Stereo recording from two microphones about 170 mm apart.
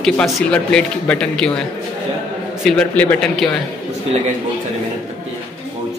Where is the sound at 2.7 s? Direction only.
5° left (ahead or behind).